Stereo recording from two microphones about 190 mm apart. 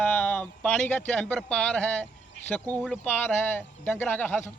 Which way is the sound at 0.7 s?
10° left (ahead or behind).